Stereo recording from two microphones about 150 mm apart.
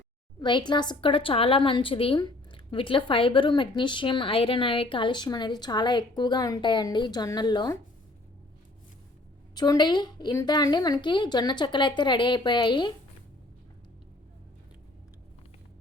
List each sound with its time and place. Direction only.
0.3 s a woman's voice: 30° left (ahead or behind)
9.6 s a woman's voice: 30° left (ahead or behind)